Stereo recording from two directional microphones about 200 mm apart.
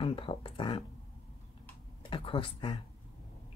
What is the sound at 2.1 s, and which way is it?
Speech, 25° left (ahead or behind).